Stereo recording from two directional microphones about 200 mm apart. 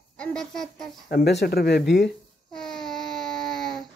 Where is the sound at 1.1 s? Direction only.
55° left (ahead or behind).